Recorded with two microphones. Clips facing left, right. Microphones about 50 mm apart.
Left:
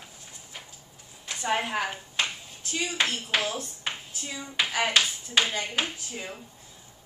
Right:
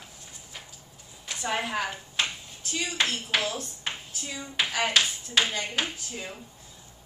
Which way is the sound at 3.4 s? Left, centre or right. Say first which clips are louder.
Even; left.